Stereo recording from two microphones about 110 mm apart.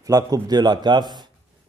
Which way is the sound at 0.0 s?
35° right (ahead or behind).